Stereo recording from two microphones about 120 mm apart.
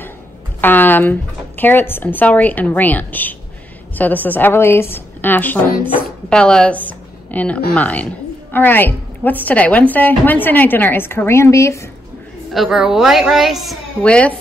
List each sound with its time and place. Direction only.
0.6 s a sound: 15° left (ahead or behind)
1.6 s a woman's voice: 15° left (ahead or behind)
12.5 s a child's voice: 5° right (ahead or behind)
14.0 s a woman's voice: 10° left (ahead or behind)